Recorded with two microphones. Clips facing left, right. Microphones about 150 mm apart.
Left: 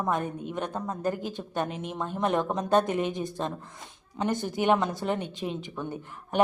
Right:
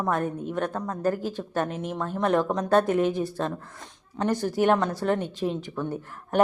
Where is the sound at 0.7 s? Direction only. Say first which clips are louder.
Right 2 dB; 20° left (ahead or behind).